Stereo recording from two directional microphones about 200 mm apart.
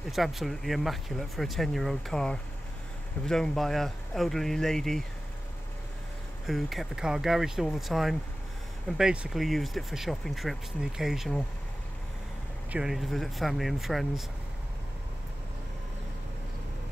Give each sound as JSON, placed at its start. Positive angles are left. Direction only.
{"t": 0.1, "sound": "speech", "side_deg": 0}
{"t": 6.4, "sound": "speech", "side_deg": 0}
{"t": 12.7, "sound": "speech", "side_deg": 0}